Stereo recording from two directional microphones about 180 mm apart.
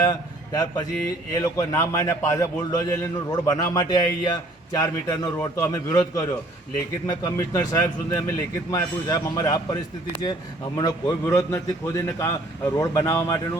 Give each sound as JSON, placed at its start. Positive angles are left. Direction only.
{"t": 0.0, "sound": "a man's voice", "side_deg": 20}